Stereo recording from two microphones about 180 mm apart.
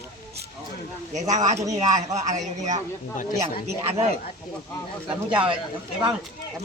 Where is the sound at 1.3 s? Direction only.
40° right (ahead or behind).